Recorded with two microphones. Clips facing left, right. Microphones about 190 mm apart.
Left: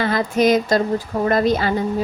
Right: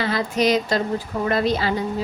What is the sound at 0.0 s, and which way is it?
Speech, 50° left (ahead or behind).